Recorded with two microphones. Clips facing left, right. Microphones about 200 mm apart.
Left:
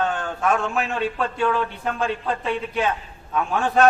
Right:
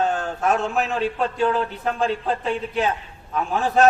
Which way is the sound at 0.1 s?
40° right (ahead or behind).